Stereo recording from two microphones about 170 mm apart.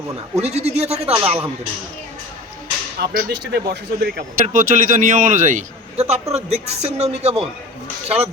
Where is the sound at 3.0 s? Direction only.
60° right (ahead or behind).